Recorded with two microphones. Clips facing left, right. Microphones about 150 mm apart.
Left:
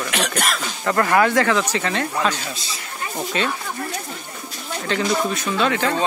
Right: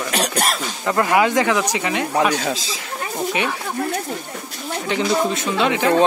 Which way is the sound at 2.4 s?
90° right.